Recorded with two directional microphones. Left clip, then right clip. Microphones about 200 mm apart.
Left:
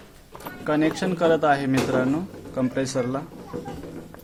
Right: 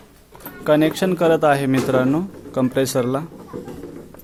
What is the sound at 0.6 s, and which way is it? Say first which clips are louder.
Speech: right 6 dB; 45° right (ahead or behind).